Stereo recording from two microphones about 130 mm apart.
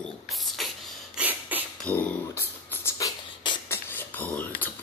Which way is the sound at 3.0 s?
35° left (ahead or behind).